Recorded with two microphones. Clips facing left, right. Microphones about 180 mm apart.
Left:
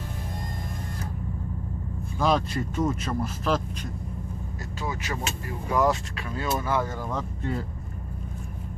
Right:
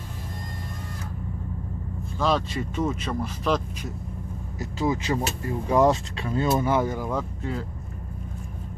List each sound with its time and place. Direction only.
2.1 s speech: 10° left (ahead or behind)
2.5 s speech: centre (ahead or behind)
4.6 s speech: 20° right (ahead or behind); by 7.6 s 5° right (ahead or behind)